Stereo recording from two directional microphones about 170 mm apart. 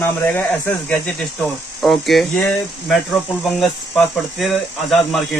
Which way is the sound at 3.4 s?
Centre (ahead or behind).